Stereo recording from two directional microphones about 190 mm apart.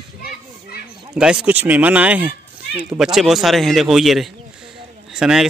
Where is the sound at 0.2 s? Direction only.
55° left (ahead or behind).